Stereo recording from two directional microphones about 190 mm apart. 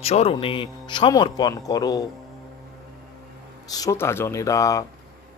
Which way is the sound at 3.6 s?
20° left (ahead or behind).